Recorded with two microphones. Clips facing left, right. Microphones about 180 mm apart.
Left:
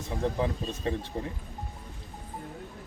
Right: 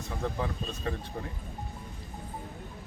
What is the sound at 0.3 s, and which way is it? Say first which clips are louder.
Speech: left 4 dB; 20° left (ahead or behind).